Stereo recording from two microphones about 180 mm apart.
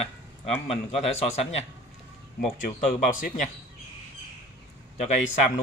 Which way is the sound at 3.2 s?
45° left (ahead or behind).